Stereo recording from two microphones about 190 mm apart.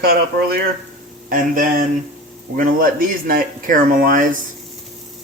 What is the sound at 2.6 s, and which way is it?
A man's voice, 50° right (ahead or behind).